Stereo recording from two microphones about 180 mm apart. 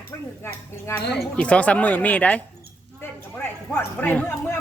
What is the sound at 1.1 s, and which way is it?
A woman's voice, 5° left (ahead or behind).